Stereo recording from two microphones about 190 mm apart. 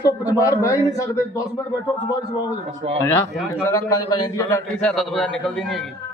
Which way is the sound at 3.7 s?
15° left (ahead or behind).